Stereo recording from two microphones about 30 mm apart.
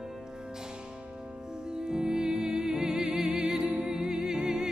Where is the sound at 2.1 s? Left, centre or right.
Centre.